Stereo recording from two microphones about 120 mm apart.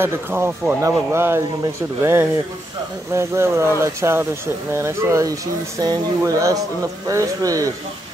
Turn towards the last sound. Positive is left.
turn(degrees=-30)  # may be behind; listen again after turning